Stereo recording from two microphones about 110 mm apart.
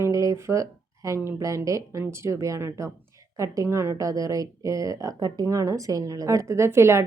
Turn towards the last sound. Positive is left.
turn(degrees=-25)  # may be behind; listen again after turning